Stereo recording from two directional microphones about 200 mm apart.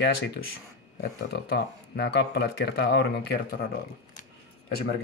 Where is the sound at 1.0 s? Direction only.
55° left (ahead or behind).